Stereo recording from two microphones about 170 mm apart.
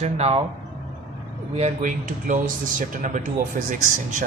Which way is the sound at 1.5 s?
45° right (ahead or behind).